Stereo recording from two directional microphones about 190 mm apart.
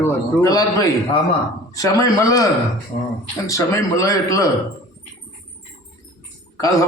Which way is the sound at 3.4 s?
15° left (ahead or behind).